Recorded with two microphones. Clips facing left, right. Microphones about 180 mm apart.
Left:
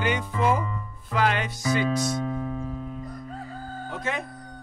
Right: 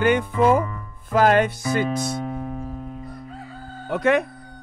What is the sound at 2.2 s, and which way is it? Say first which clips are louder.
Music: even; 15° right (ahead or behind).